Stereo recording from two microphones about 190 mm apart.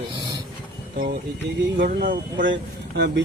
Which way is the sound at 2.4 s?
70° right (ahead or behind).